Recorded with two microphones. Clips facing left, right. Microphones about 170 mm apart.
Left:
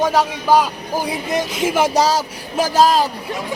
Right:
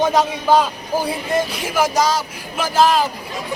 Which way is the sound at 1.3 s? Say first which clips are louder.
Left 2 dB; 20° left (ahead or behind).